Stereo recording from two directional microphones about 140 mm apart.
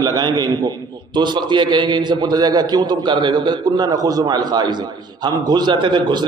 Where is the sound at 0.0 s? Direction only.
30° right (ahead or behind).